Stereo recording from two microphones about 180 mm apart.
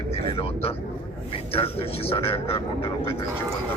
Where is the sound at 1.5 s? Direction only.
30° left (ahead or behind).